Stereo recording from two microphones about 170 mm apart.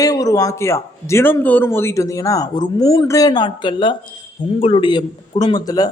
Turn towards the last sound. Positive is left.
turn(degrees=20)  # may be behind; listen again after turning